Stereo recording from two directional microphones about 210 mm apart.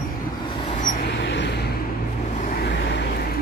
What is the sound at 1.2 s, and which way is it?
Vehicle, 60° left (ahead or behind).